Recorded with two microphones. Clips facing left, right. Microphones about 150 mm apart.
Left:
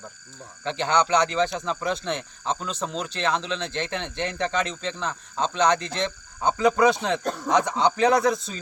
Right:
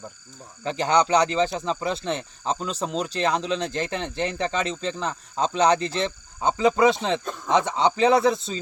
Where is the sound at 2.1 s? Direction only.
35° right (ahead or behind).